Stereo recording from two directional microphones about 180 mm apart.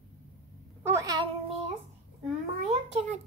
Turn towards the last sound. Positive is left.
turn(degrees=-40)  # may be behind; listen again after turning